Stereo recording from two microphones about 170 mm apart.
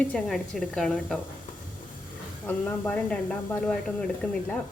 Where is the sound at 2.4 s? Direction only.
10° left (ahead or behind).